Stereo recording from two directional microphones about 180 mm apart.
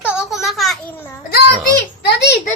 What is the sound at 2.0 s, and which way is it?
Speech, 70° left (ahead or behind).